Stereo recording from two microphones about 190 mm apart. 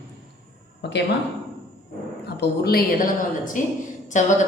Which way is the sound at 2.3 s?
55° left (ahead or behind).